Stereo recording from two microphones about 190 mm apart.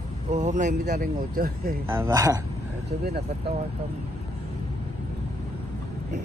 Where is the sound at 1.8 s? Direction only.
10° right (ahead or behind).